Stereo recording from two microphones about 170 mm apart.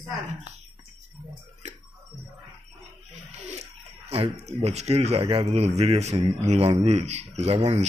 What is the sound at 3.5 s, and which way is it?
Speech, 40° right (ahead or behind).